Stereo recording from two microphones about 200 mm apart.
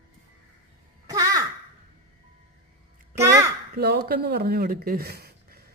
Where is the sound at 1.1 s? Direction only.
15° right (ahead or behind).